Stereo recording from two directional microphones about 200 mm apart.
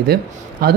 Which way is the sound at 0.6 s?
50° right (ahead or behind).